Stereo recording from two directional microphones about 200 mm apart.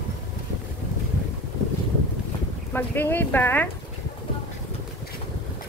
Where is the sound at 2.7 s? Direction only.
10° left (ahead or behind).